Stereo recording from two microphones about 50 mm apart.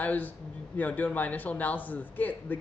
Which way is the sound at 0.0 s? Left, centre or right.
Left.